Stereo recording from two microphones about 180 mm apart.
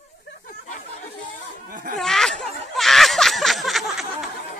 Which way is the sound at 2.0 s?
Centre (ahead or behind).